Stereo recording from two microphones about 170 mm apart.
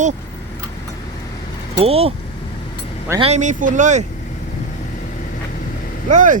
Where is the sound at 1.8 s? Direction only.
35° right (ahead or behind).